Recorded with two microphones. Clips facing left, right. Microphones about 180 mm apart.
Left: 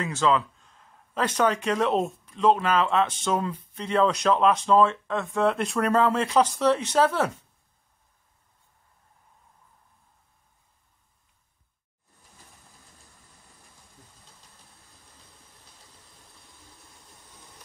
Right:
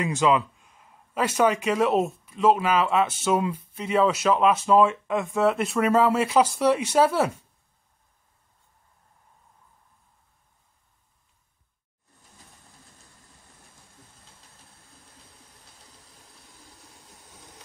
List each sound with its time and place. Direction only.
0.0 s speech: 15° right (ahead or behind)